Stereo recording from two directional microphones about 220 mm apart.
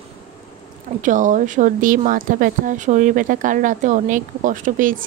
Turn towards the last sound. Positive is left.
turn(degrees=-35)  # may be behind; listen again after turning